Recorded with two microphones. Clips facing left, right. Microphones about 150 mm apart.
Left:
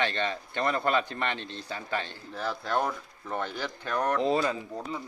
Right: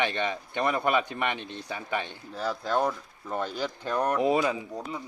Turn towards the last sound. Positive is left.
turn(degrees=-10)  # may be behind; listen again after turning